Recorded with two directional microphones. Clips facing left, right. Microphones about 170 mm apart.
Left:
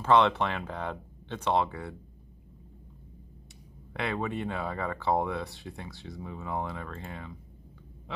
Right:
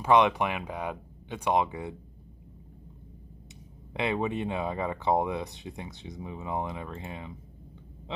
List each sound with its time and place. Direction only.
0.0 s speech: 15° right (ahead or behind)
3.9 s speech: 20° right (ahead or behind)